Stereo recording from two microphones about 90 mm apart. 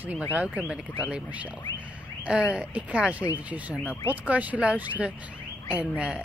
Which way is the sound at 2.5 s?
10° right (ahead or behind).